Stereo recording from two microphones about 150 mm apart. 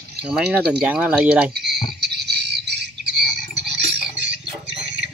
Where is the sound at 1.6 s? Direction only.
90° right.